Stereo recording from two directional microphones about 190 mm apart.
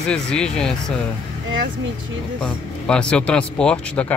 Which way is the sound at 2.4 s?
5° left (ahead or behind).